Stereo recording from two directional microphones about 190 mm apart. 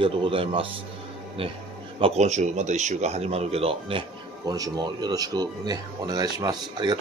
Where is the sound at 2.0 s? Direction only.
35° right (ahead or behind).